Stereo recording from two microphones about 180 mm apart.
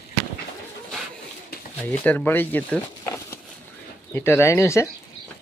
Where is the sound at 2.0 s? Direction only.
10° left (ahead or behind).